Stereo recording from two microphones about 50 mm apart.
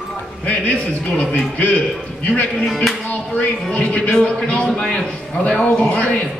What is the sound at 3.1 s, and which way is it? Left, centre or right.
A man's voice, left.